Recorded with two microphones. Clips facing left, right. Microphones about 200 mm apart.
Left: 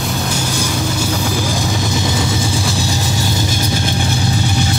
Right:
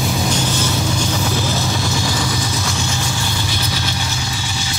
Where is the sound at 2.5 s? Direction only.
35° left (ahead or behind).